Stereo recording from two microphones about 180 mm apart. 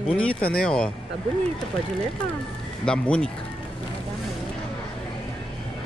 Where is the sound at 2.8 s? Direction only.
5° left (ahead or behind).